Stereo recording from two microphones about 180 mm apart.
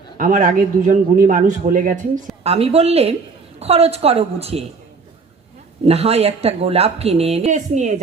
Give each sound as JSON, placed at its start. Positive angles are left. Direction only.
{"t": 0.2, "sound": "a man's voice", "side_deg": -45}
{"t": 5.8, "sound": "a woman's voice", "side_deg": -35}